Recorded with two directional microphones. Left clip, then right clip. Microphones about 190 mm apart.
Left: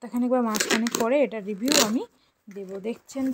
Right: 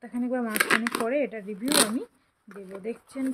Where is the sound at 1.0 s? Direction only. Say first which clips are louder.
Left 5 dB; 35° left (ahead or behind).